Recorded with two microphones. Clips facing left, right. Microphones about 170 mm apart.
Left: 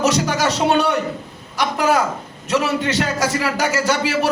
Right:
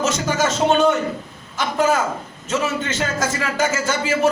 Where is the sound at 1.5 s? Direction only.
70° left (ahead or behind).